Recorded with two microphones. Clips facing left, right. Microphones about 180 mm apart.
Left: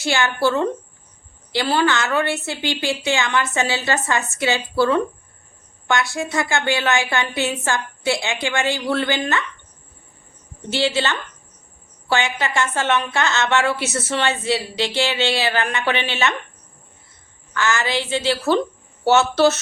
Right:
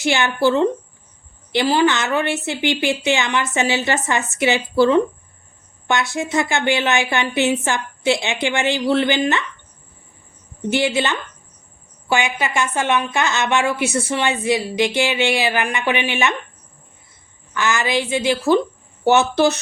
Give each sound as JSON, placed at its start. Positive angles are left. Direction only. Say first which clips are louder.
{"t": 0.0, "sound": "a woman's voice", "louder": "right 2 dB", "side_deg": -20}
{"t": 10.7, "sound": "a woman's voice", "louder": "right 2 dB", "side_deg": -15}
{"t": 17.5, "sound": "a woman's voice", "louder": "right 2 dB", "side_deg": -15}